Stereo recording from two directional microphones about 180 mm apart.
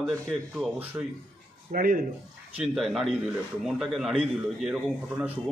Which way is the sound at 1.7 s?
50° right (ahead or behind).